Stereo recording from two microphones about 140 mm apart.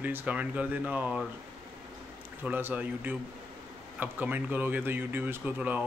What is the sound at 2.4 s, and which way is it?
Speech, 15° right (ahead or behind).